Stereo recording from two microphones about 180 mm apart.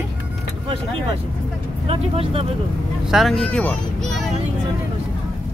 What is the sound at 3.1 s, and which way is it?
Speech, centre (ahead or behind).